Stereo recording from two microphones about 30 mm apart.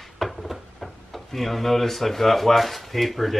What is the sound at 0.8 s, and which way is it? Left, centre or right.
Speech, centre.